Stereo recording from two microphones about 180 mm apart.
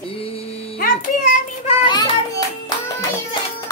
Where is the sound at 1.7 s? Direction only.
25° left (ahead or behind).